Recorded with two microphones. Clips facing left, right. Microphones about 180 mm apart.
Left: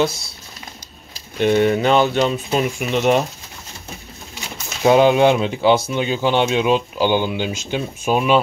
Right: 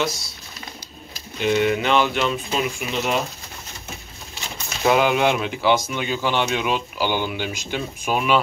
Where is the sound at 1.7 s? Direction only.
35° left (ahead or behind).